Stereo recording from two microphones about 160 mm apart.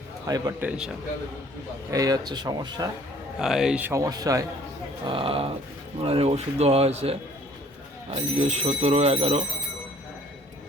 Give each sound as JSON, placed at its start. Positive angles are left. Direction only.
{"t": 0.3, "sound": "speech", "side_deg": -25}
{"t": 1.9, "sound": "speech", "side_deg": -20}
{"t": 3.3, "sound": "speech", "side_deg": -5}
{"t": 5.0, "sound": "speech", "side_deg": -35}